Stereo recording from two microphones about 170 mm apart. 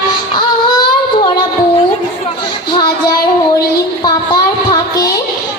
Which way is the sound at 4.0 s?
25° left (ahead or behind).